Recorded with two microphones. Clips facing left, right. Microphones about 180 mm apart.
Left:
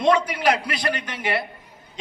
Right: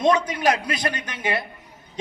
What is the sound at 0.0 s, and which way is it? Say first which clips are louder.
A man's voice: even; 20° right (ahead or behind).